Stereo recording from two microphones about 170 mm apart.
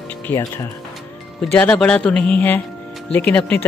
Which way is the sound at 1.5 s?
10° left (ahead or behind).